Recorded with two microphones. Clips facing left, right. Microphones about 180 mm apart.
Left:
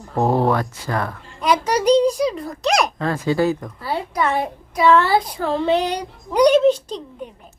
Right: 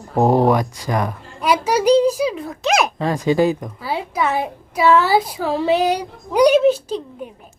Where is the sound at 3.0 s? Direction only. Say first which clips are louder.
Right 3 dB; 15° right (ahead or behind).